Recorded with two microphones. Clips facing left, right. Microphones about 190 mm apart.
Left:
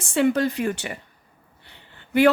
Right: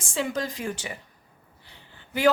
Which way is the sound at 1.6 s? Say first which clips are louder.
Left 2 dB; 65° left (ahead or behind).